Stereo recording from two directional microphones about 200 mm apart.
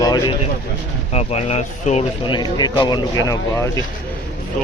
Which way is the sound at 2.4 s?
20° left (ahead or behind).